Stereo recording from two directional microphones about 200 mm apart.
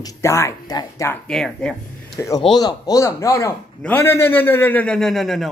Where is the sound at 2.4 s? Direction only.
20° left (ahead or behind); by 5.4 s centre (ahead or behind).